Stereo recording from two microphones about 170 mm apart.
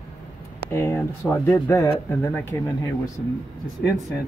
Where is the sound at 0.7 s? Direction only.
15° left (ahead or behind).